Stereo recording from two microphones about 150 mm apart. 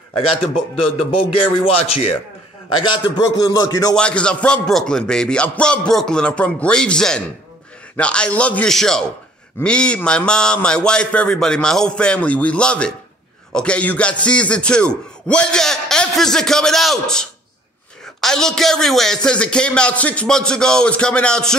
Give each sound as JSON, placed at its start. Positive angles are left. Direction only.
{"t": 0.9, "sound": "a man's voice", "side_deg": 40}
{"t": 2.8, "sound": "a man's voice", "side_deg": 30}
{"t": 3.9, "sound": "rapping", "side_deg": 5}
{"t": 7.9, "sound": "a man's voice", "side_deg": 5}
{"t": 13.5, "sound": "rapping", "side_deg": 5}